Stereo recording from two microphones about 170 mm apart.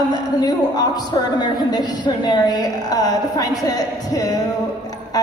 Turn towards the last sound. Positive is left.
turn(degrees=20)  # may be behind; listen again after turning